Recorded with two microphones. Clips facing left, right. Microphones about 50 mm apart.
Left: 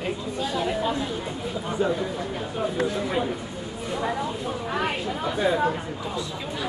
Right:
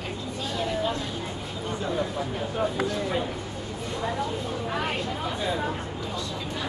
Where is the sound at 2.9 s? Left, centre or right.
Centre.